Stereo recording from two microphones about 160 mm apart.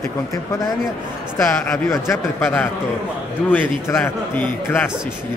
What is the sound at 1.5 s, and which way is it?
A man's voice, 20° left (ahead or behind).